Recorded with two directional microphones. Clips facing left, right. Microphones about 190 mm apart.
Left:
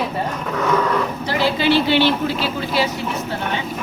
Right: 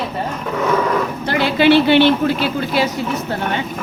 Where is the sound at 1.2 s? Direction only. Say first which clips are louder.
Right 6 dB; 60° right (ahead or behind).